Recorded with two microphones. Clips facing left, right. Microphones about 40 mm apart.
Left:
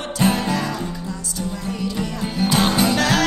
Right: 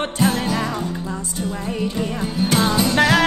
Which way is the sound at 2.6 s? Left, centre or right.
Left.